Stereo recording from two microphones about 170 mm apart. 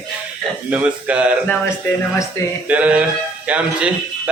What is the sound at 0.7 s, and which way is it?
Speech, 5° right (ahead or behind).